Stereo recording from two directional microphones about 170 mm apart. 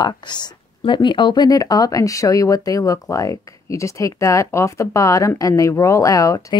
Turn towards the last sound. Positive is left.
turn(degrees=20)  # may be behind; listen again after turning